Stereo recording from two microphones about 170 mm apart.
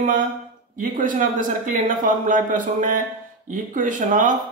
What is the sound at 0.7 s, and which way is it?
A man's voice, 50° right (ahead or behind).